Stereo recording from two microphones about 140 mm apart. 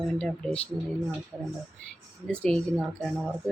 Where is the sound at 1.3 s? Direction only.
5° right (ahead or behind).